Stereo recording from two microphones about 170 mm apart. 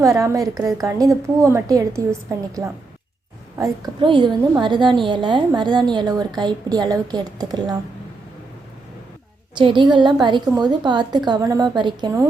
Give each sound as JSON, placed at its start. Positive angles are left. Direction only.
{"t": 0.0, "sound": "a woman's voice", "side_deg": -20}
{"t": 3.6, "sound": "a woman's voice", "side_deg": -25}
{"t": 9.6, "sound": "a woman's voice", "side_deg": -30}